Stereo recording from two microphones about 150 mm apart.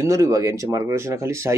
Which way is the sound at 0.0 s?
20° right (ahead or behind).